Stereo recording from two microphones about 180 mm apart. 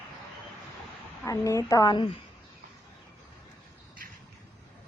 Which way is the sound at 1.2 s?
15° left (ahead or behind).